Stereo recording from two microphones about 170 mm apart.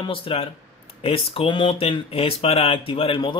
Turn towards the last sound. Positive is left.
turn(degrees=30)  # may be behind; listen again after turning